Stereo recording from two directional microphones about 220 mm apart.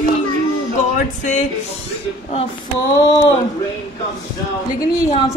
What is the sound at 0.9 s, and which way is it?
Music, 35° left (ahead or behind).